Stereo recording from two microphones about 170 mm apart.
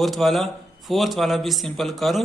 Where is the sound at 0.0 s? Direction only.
Centre (ahead or behind).